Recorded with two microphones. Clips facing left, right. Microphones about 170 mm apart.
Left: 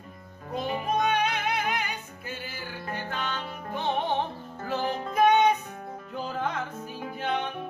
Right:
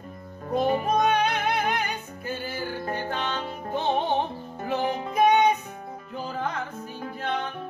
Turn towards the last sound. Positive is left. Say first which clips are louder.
# even
turn(degrees=5)  # may be behind; listen again after turning